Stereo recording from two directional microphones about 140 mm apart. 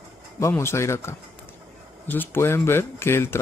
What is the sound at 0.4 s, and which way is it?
Speech, 20° left (ahead or behind).